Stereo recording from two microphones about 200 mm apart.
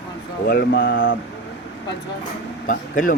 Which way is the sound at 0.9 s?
70° left (ahead or behind).